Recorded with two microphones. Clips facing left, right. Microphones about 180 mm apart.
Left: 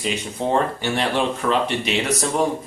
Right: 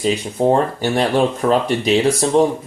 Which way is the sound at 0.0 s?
40° right (ahead or behind).